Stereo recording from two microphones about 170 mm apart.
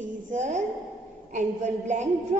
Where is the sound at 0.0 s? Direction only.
45° right (ahead or behind).